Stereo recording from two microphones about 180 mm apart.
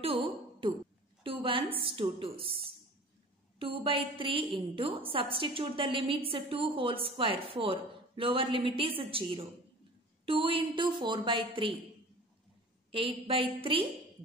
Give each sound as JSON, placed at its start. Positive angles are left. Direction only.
{"t": 0.0, "sound": "a sound", "side_deg": -30}
{"t": 1.8, "sound": "a woman's voice", "side_deg": -30}
{"t": 12.9, "sound": "a woman's voice", "side_deg": -30}